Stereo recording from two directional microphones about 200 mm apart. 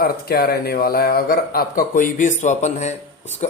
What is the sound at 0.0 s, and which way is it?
Speech, 50° left (ahead or behind).